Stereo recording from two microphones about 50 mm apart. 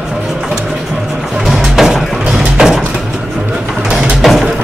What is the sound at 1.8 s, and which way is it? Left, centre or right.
Music, centre.